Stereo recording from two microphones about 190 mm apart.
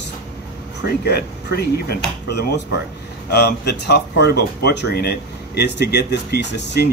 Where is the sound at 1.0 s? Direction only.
60° left (ahead or behind).